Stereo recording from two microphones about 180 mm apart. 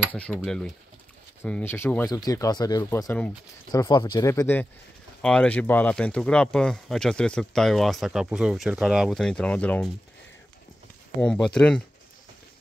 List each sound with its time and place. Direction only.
0.4 s speech: 5° left (ahead or behind)
11.1 s speech: 5° left (ahead or behind)